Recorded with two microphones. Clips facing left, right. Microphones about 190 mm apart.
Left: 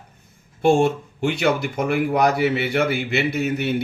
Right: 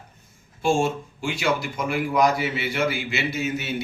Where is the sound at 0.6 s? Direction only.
60° left (ahead or behind).